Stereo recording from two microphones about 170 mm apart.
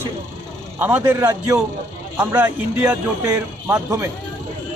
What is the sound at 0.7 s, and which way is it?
Speech, 15° right (ahead or behind).